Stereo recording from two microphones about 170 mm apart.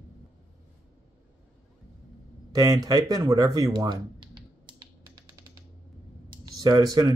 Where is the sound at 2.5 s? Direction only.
25° right (ahead or behind).